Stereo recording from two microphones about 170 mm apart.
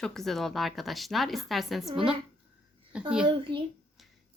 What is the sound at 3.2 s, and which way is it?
Speech, 30° right (ahead or behind).